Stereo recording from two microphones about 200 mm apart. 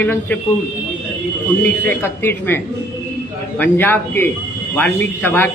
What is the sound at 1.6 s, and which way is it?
Speech, 10° left (ahead or behind).